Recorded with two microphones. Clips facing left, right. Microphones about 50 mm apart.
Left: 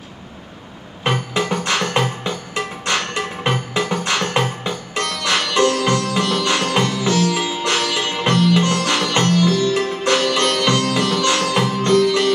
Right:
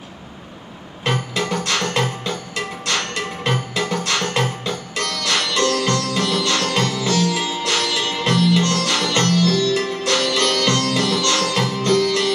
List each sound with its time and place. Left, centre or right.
1.0 s music: centre